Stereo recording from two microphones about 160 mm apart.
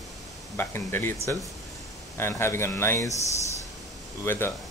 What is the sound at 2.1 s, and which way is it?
Speech, 15° left (ahead or behind).